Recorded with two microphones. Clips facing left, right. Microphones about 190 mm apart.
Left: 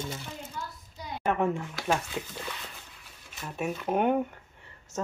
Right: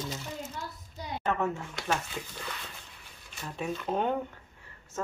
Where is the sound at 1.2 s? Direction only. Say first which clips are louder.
Left 3 dB; 15° left (ahead or behind).